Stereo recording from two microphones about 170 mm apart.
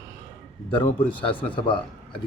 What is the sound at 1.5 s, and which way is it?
Speech, 30° left (ahead or behind).